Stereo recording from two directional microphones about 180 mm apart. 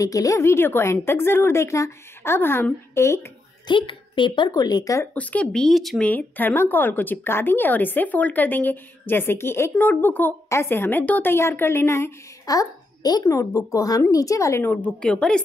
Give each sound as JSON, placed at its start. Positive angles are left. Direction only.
{"t": 0.0, "sound": "speech", "side_deg": 20}
{"t": 3.7, "sound": "speech", "side_deg": 25}
{"t": 5.1, "sound": "a woman's voice", "side_deg": 10}